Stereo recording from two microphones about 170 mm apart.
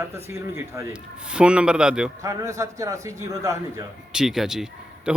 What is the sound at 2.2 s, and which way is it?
A man's voice, 20° right (ahead or behind).